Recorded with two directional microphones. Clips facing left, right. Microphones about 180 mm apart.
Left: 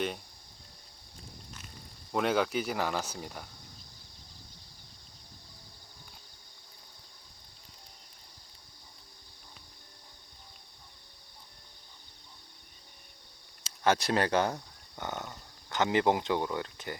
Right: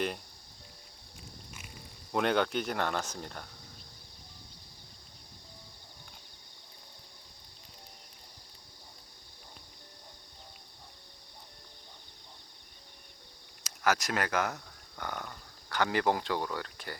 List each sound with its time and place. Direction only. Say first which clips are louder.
2.1 s speech: even; centre (ahead or behind)
13.7 s speech: left 3 dB; 30° left (ahead or behind)